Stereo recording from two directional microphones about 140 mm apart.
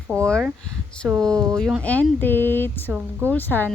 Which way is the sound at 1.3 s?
25° right (ahead or behind).